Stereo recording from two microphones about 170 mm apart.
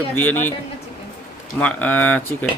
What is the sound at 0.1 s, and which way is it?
Speech, 10° left (ahead or behind).